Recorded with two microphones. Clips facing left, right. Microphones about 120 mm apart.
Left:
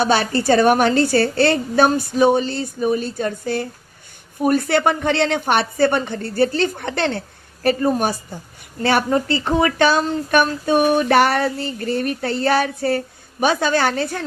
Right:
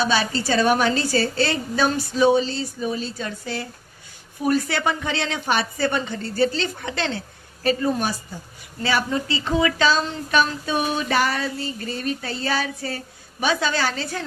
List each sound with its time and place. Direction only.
0.0 s a woman's voice: 60° left (ahead or behind)